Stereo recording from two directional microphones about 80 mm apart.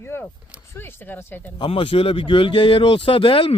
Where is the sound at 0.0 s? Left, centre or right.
Left.